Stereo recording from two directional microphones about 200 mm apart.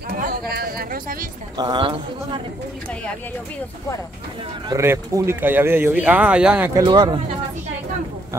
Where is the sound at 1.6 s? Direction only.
25° right (ahead or behind).